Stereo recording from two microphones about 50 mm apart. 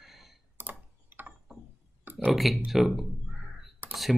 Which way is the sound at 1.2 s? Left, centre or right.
Right.